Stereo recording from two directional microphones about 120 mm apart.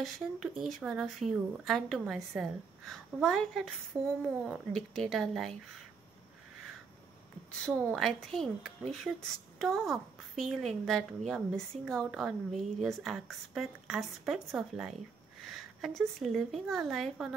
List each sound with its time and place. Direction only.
0.0 s a woman's voice: centre (ahead or behind)
3.9 s speech: 25° right (ahead or behind)
4.5 s a woman's voice: 5° left (ahead or behind)
7.9 s a woman's voice: centre (ahead or behind)